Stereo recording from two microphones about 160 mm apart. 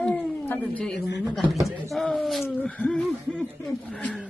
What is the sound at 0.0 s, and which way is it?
Cat, 10° left (ahead or behind).